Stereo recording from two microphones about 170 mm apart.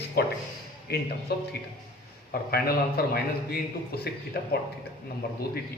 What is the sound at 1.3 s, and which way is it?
Speech, 70° left (ahead or behind).